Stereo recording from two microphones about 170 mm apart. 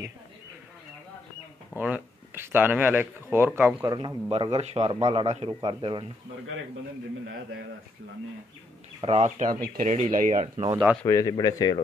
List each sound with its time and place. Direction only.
1.8 s speech: 10° right (ahead or behind)
3.8 s speech: 25° right (ahead or behind)
4.3 s speech: 35° right (ahead or behind)
9.0 s speech: 40° right (ahead or behind)
11.1 s speech: 20° left (ahead or behind)